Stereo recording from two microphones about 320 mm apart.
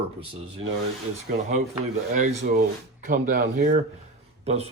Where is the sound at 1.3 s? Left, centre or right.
Right.